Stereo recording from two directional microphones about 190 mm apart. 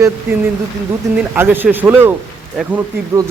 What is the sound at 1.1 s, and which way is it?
Speech, 10° right (ahead or behind).